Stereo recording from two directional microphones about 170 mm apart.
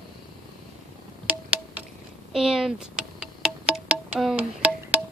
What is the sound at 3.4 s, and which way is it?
Music, 5° right (ahead or behind).